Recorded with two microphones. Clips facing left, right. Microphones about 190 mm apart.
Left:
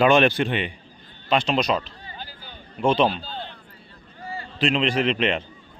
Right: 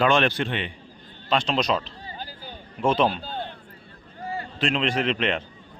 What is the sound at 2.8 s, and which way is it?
Speech, centre (ahead or behind).